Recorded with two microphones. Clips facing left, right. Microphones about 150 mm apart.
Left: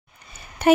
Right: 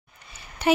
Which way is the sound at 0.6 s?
50° left (ahead or behind).